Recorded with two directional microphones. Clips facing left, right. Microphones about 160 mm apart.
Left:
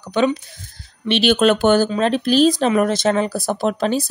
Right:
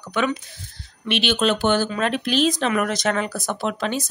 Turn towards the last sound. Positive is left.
turn(degrees=35)  # may be behind; listen again after turning